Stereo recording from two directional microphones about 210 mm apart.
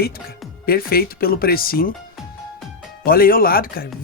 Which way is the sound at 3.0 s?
45° left (ahead or behind).